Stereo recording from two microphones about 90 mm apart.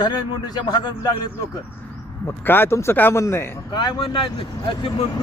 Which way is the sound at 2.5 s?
25° left (ahead or behind).